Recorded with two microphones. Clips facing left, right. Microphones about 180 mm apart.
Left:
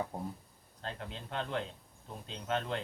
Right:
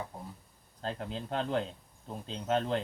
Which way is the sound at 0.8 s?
35° right (ahead or behind).